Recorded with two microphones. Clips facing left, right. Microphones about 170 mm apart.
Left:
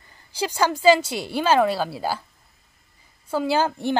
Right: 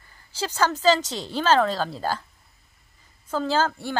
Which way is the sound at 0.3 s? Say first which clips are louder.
Left 2 dB; 15° left (ahead or behind).